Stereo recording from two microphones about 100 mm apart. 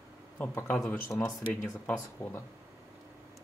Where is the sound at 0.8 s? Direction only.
25° left (ahead or behind).